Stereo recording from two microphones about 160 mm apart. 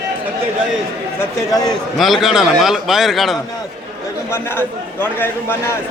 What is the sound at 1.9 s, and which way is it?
A man's voice, centre (ahead or behind).